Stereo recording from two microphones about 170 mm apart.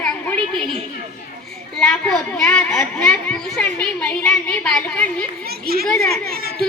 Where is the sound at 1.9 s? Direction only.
5° left (ahead or behind).